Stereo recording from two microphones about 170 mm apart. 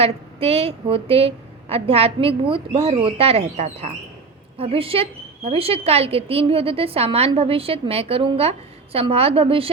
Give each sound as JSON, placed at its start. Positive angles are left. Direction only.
{"t": 0.0, "sound": "a woman's voice", "side_deg": -35}